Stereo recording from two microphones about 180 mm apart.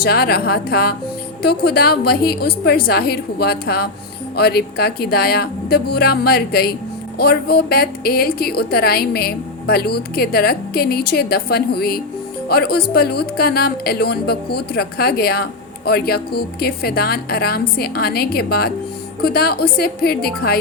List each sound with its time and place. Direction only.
0.0 s a woman's voice: 60° left (ahead or behind)